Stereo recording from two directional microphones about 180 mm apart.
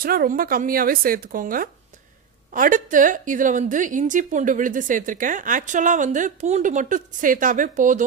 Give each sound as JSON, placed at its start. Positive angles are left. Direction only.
{"t": 0.0, "sound": "a woman's voice", "side_deg": -55}